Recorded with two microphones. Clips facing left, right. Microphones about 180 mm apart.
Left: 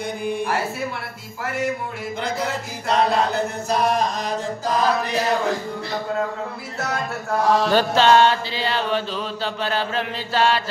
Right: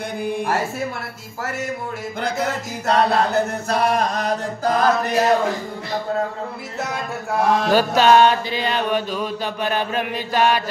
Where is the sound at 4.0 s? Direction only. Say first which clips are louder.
Right 2 dB; 60° right (ahead or behind).